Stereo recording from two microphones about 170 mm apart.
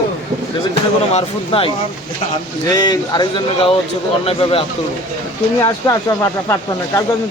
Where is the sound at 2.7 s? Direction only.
25° left (ahead or behind).